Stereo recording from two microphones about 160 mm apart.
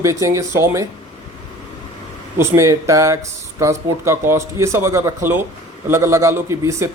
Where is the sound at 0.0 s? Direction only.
20° right (ahead or behind).